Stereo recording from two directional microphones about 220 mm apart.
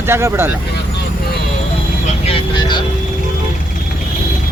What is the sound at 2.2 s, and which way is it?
Vehicle, 25° left (ahead or behind).